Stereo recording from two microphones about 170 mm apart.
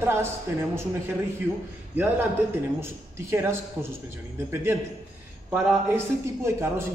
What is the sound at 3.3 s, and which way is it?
A man's voice, 15° right (ahead or behind).